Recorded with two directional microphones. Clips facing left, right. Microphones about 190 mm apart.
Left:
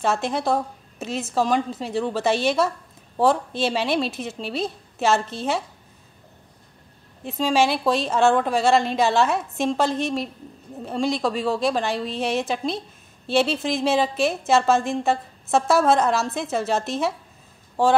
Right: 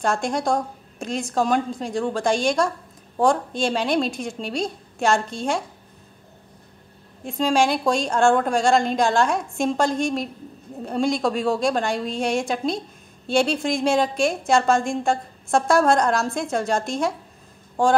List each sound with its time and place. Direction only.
0.0 s a woman's voice: 5° left (ahead or behind)
7.2 s a woman's voice: centre (ahead or behind)